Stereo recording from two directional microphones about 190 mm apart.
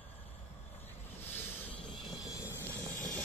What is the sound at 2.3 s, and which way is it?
Vehicle, 15° left (ahead or behind).